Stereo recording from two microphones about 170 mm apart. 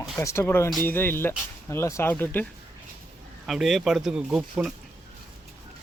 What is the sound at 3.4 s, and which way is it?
Speech, centre (ahead or behind).